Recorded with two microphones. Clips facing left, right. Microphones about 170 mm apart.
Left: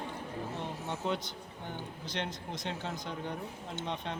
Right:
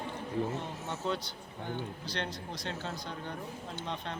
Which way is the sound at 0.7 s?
15° left (ahead or behind).